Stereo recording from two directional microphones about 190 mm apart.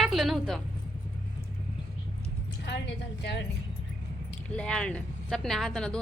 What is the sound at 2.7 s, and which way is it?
Speech, 60° left (ahead or behind).